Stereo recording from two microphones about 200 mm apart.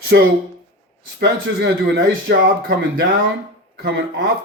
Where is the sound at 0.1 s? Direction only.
60° right (ahead or behind).